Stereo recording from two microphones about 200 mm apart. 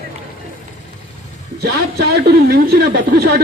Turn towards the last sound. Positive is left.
turn(degrees=-50)  # may be behind; listen again after turning